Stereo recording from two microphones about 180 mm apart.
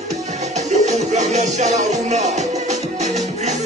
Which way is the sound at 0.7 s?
40° right (ahead or behind).